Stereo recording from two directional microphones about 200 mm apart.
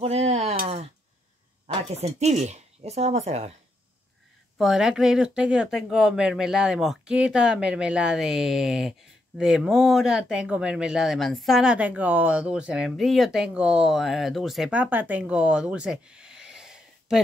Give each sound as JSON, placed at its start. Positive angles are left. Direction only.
{"t": 0.0, "sound": "a sound", "side_deg": -30}
{"t": 1.7, "sound": "speech", "side_deg": -30}
{"t": 4.6, "sound": "speech", "side_deg": 0}